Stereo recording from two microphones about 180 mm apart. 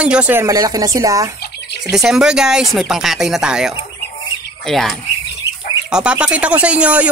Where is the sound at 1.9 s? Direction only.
5° right (ahead or behind).